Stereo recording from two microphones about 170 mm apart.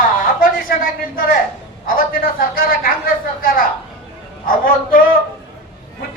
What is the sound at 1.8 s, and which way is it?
A man's voice, 60° left (ahead or behind).